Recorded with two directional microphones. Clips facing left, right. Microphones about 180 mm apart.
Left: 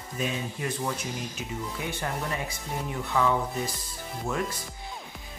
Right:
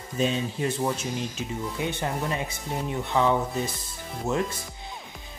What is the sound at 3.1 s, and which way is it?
Speech, 20° right (ahead or behind).